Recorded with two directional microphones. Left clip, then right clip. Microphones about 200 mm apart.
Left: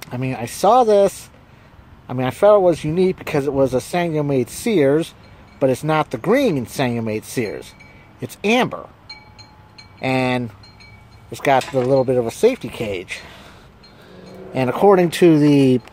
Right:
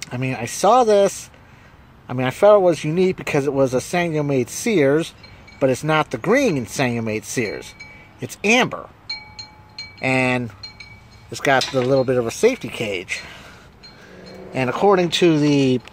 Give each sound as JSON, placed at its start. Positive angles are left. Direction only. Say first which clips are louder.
{"t": 0.0, "sound": "speech", "louder": "even", "side_deg": 5}
{"t": 9.9, "sound": "speech", "louder": "even", "side_deg": 5}
{"t": 14.5, "sound": "speech", "louder": "left 2 dB", "side_deg": 15}
{"t": 14.8, "sound": "speech", "louder": "left 3 dB", "side_deg": 25}